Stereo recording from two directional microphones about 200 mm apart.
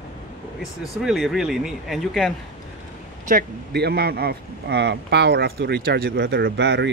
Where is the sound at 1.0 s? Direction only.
Centre (ahead or behind).